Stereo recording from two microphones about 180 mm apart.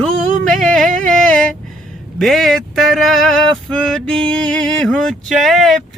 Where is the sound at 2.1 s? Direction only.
Centre (ahead or behind).